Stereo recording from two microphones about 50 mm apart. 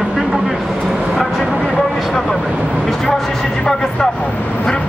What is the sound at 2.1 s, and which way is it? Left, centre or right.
Vehicle, centre.